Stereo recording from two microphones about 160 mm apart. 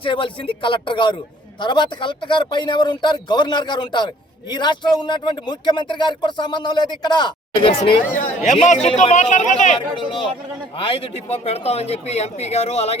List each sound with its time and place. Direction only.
0.0 s a man's voice: 30° left (ahead or behind)
8.4 s speech: 50° left (ahead or behind)
10.8 s a man's voice: 35° left (ahead or behind)